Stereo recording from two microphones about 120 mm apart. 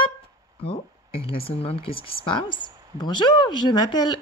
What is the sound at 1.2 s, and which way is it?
Speech, 50° left (ahead or behind).